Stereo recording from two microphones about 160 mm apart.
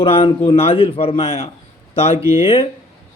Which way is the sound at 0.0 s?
35° left (ahead or behind).